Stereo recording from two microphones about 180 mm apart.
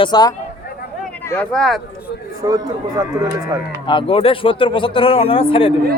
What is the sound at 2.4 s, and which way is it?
Speech, 20° right (ahead or behind).